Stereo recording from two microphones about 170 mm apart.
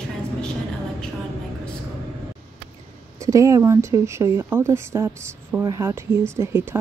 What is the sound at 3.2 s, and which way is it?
Speech, 20° right (ahead or behind).